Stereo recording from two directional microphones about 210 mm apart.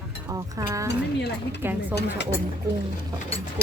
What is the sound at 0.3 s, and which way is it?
Speech, 15° right (ahead or behind).